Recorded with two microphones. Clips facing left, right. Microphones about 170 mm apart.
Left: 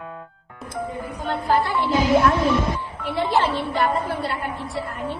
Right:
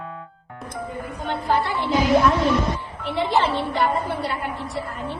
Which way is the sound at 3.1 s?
5° left (ahead or behind).